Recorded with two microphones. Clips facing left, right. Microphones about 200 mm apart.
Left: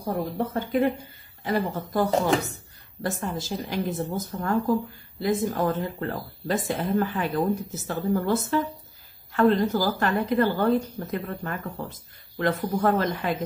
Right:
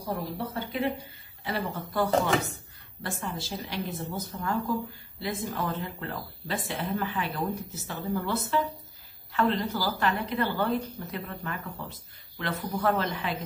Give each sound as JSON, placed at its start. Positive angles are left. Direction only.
{"t": 0.0, "sound": "a woman's voice", "side_deg": 50}